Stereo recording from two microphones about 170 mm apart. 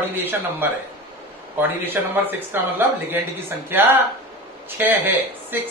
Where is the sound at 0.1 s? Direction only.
10° right (ahead or behind).